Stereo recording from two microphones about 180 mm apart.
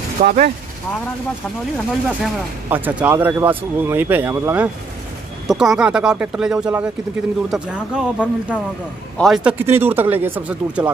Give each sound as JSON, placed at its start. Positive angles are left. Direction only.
{"t": 0.2, "sound": "speech", "side_deg": -50}
{"t": 2.0, "sound": "speech", "side_deg": -10}